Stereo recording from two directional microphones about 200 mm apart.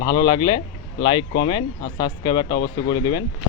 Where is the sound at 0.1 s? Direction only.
20° left (ahead or behind).